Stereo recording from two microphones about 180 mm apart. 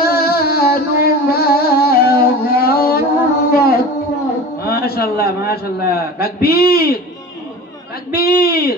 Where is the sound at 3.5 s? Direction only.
60° left (ahead or behind).